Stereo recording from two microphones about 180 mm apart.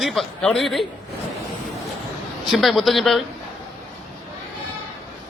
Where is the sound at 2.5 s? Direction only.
Centre (ahead or behind).